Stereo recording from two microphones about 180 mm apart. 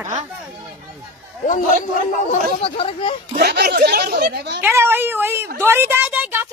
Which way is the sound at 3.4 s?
60° right (ahead or behind).